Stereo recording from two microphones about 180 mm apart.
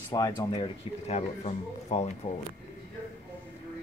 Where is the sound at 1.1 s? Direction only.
35° left (ahead or behind).